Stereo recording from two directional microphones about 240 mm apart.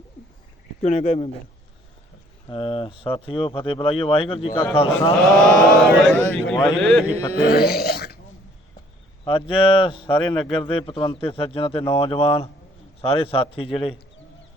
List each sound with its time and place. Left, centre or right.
0.8 s speech: left
2.5 s speech: left
5.4 s mantra: centre
7.3 s speech: left
9.2 s speech: left